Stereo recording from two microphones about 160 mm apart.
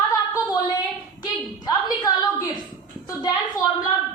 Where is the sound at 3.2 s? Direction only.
25° left (ahead or behind).